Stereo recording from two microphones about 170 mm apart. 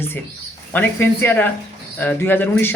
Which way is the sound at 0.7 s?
10° left (ahead or behind).